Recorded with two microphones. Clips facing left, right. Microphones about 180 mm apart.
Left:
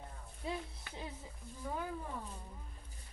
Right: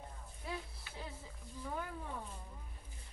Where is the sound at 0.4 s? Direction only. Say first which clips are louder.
Left 3 dB; 20° left (ahead or behind).